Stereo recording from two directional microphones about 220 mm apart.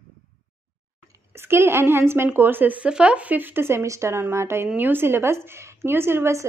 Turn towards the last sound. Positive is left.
turn(degrees=-10)  # may be behind; listen again after turning